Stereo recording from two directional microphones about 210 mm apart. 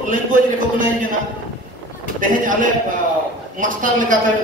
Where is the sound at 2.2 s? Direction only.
40° right (ahead or behind).